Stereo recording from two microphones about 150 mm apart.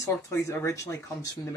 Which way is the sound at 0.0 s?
20° left (ahead or behind).